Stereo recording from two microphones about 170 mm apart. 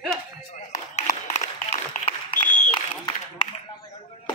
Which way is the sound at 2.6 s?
30° left (ahead or behind).